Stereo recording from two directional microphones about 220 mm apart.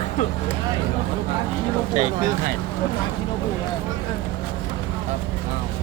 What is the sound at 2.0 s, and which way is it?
Speech, 35° right (ahead or behind).